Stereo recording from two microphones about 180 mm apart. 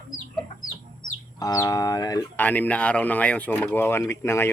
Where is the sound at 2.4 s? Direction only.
10° left (ahead or behind).